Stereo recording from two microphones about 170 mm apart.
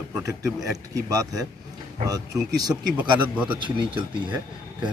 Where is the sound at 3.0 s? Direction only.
10° right (ahead or behind).